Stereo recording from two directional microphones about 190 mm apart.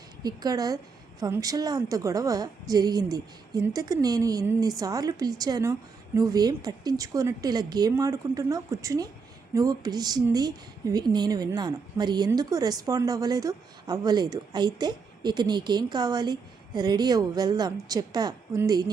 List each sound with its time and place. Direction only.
0.2 s a woman's voice: 20° right (ahead or behind)